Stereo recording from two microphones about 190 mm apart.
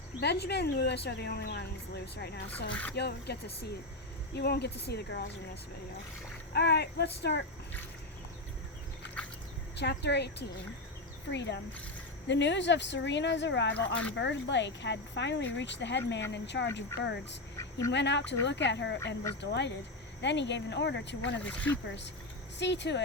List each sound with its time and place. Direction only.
0.2 s speech: 60° left (ahead or behind)
6.5 s speech: 60° left (ahead or behind)
9.7 s speech: 60° left (ahead or behind)
17.6 s speech: 15° left (ahead or behind)
17.9 s speech: 70° left (ahead or behind)
21.4 s speech: 10° left (ahead or behind)
21.8 s speech: 65° left (ahead or behind)